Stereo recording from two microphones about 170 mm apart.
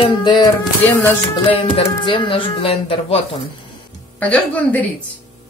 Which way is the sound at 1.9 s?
30° left (ahead or behind).